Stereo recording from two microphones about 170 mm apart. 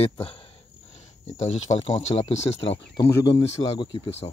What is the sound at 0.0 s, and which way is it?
Speech, 35° left (ahead or behind).